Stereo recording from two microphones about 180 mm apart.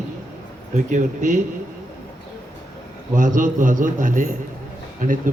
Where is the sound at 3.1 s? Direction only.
45° right (ahead or behind).